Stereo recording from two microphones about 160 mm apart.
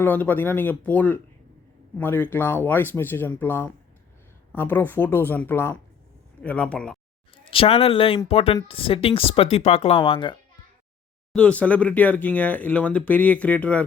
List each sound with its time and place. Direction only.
0.0 s speech: 10° left (ahead or behind)
7.4 s speech: 35° left (ahead or behind)
11.3 s speech: 5° left (ahead or behind)